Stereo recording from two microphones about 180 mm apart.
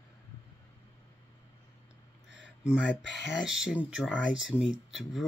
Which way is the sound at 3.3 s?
5° right (ahead or behind).